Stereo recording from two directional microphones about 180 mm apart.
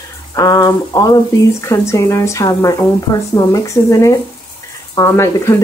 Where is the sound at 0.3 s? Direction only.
20° left (ahead or behind).